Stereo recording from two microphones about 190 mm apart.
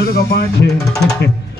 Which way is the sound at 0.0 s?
55° left (ahead or behind).